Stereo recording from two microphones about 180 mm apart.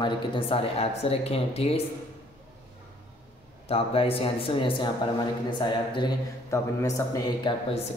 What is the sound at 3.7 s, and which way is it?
A man's voice, 30° left (ahead or behind).